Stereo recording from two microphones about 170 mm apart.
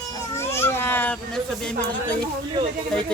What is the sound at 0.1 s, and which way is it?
Cat, 15° left (ahead or behind).